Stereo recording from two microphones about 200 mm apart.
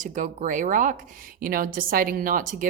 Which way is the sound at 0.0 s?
40° right (ahead or behind).